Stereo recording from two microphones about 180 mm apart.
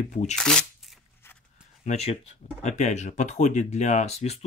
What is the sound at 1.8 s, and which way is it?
Speech, 35° left (ahead or behind).